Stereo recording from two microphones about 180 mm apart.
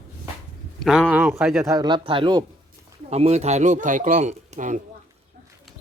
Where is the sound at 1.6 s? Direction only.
20° right (ahead or behind); by 4.8 s 40° right (ahead or behind).